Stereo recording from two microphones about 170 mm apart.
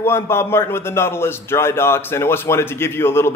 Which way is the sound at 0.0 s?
15° left (ahead or behind).